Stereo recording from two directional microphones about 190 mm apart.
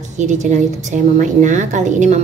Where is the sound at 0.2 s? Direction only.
40° right (ahead or behind).